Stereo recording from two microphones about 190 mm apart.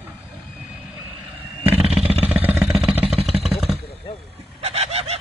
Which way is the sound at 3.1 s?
30° right (ahead or behind).